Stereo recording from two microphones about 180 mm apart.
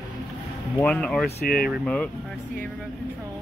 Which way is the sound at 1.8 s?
5° left (ahead or behind).